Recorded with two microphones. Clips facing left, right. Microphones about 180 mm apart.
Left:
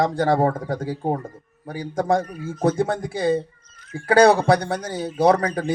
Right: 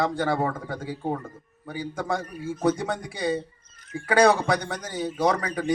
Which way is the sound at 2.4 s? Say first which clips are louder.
Left 2 dB; 25° left (ahead or behind).